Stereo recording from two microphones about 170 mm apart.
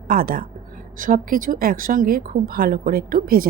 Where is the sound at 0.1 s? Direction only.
55° right (ahead or behind).